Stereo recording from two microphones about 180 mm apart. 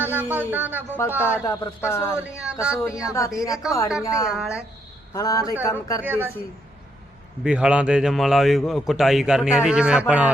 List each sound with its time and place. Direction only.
0.0 s a man's voice: 10° right (ahead or behind)
1.2 s speech: 15° left (ahead or behind)
2.1 s a man's voice: 5° right (ahead or behind)
3.0 s speech: 15° left (ahead or behind)
4.4 s a man's voice: 5° right (ahead or behind)
5.1 s speech: 20° left (ahead or behind)
6.0 s a man's voice: 10° right (ahead or behind)
7.4 s a man's voice: 5° right (ahead or behind)